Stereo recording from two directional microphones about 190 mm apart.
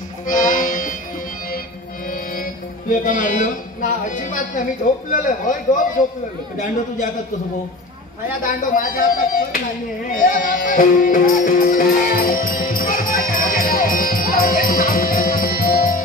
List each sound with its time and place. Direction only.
0.3 s music: 45° left (ahead or behind)
2.9 s speech: 45° left (ahead or behind)
8.7 s speech: 45° left (ahead or behind)
10.1 s music: 45° left (ahead or behind)